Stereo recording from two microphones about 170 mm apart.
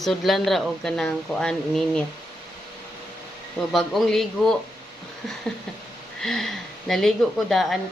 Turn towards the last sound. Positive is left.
turn(degrees=0)  # may be behind; listen again after turning